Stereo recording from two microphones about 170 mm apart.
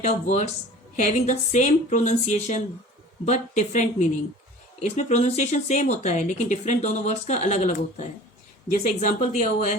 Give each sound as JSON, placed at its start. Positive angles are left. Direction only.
{"t": 0.0, "sound": "speech", "side_deg": 45}